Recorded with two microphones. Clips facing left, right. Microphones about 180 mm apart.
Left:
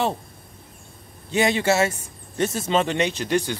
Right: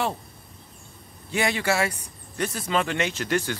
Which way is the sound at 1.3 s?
25° left (ahead or behind).